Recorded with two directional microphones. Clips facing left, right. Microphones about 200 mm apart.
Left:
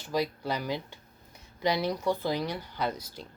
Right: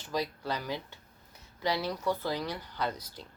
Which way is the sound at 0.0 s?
10° left (ahead or behind).